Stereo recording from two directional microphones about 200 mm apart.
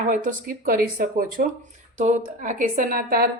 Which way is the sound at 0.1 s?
40° right (ahead or behind).